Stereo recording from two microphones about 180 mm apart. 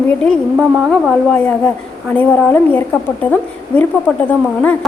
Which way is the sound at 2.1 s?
10° left (ahead or behind).